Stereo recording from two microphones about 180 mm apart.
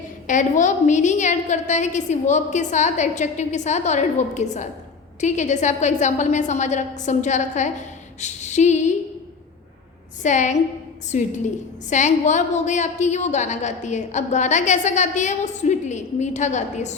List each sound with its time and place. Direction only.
0.3 s a woman's voice: 45° left (ahead or behind)
10.2 s a woman's voice: 40° left (ahead or behind)